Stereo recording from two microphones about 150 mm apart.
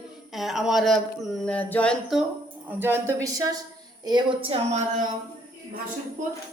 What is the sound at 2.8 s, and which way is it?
A woman's voice, 15° right (ahead or behind).